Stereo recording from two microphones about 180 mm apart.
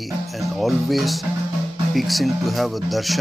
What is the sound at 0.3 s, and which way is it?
Speech, centre (ahead or behind).